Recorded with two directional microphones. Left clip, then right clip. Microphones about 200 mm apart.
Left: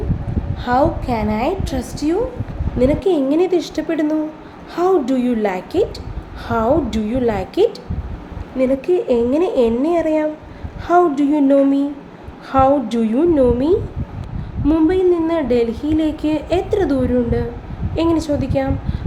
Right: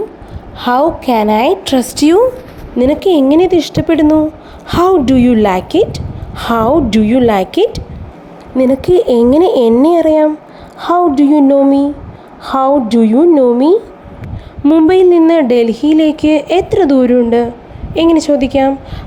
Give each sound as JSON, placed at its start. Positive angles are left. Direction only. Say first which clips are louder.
{"t": 0.6, "sound": "a woman's voice", "louder": "right 6 dB", "side_deg": -40}